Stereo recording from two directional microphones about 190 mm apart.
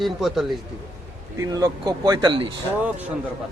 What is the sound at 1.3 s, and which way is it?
Speech, 15° right (ahead or behind).